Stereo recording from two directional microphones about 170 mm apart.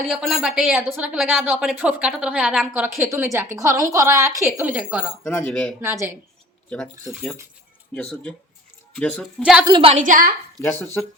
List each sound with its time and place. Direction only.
0.1 s speech: centre (ahead or behind)
0.7 s a woman's voice: 10° right (ahead or behind)
4.7 s speech: 5° right (ahead or behind)
5.8 s a woman's voice: 15° right (ahead or behind)
6.7 s speech: 5° left (ahead or behind)
9.4 s speech: 5° right (ahead or behind)
9.6 s a woman's voice: 25° right (ahead or behind)
9.9 s a woman's voice: 50° right (ahead or behind)
10.6 s speech: 10° left (ahead or behind)